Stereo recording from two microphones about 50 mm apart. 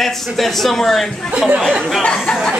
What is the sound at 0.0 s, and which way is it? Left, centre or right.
A man's voice, centre.